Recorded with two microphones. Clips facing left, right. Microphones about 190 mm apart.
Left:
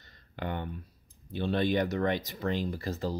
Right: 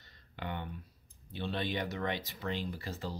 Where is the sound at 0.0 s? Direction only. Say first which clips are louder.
Left 5 dB; 45° left (ahead or behind).